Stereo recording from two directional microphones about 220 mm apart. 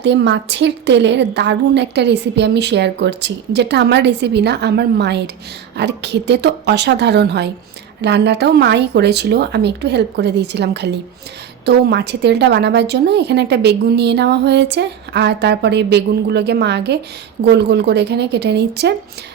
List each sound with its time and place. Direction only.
0.0 s a woman's voice: 55° right (ahead or behind)